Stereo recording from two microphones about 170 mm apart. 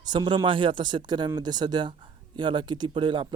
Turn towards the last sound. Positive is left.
turn(degrees=-30)  # may be behind; listen again after turning